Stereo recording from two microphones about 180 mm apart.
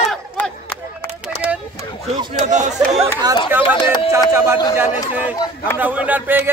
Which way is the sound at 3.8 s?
25° left (ahead or behind).